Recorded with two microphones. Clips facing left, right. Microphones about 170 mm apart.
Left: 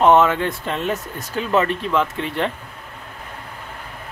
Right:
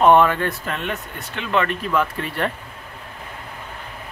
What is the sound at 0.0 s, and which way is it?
Speech, 20° left (ahead or behind).